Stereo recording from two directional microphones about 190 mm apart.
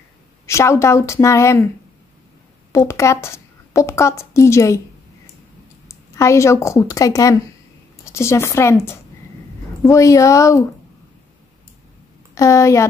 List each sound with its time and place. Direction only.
0.5 s a woman's voice: 15° left (ahead or behind)
2.7 s a woman's voice: 15° left (ahead or behind)
5.9 s a woman's voice: 15° left (ahead or behind)
12.4 s a woman's voice: 15° left (ahead or behind)